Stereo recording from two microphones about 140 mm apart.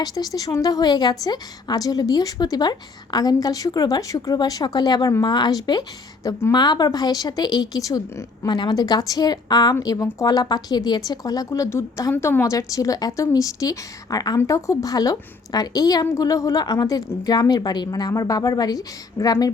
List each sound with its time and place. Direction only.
0.0 s a woman's voice: 25° left (ahead or behind)